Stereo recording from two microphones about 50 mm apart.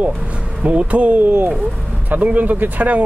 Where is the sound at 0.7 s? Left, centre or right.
Right.